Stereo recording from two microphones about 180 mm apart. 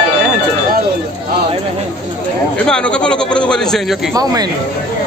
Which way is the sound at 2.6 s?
5° left (ahead or behind).